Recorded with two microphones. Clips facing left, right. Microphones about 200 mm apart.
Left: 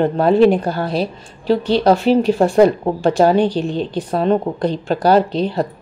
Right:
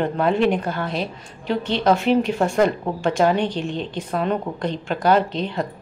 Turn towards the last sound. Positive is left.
turn(degrees=35)  # may be behind; listen again after turning